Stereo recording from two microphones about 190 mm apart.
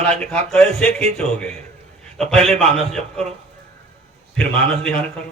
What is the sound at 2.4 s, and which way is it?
Speech, 5° left (ahead or behind).